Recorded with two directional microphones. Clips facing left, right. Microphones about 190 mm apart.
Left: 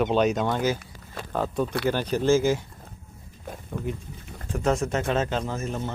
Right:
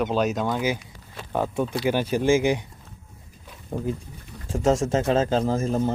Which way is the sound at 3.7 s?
35° right (ahead or behind).